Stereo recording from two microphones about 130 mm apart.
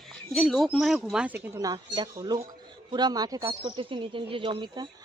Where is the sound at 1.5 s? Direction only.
30° right (ahead or behind).